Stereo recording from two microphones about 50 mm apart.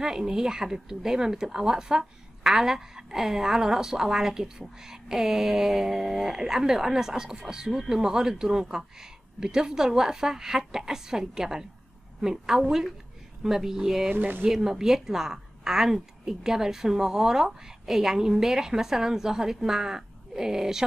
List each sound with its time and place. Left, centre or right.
0.0 s speech: centre
14.1 s speech: right
14.4 s speech: centre